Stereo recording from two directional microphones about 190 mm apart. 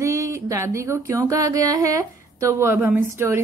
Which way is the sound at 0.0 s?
15° right (ahead or behind).